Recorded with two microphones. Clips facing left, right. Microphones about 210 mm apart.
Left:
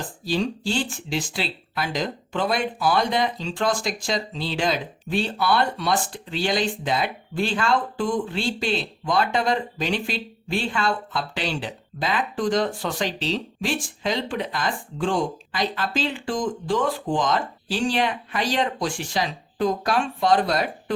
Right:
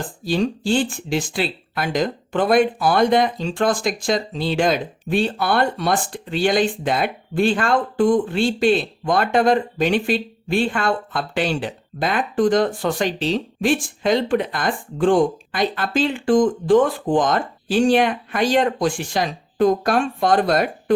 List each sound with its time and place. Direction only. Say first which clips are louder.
0.3 s speech: right 5 dB; 50° right (ahead or behind)